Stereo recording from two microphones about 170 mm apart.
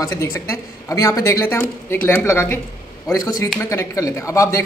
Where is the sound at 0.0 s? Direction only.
15° left (ahead or behind).